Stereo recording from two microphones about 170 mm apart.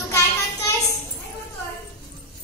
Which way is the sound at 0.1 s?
20° left (ahead or behind).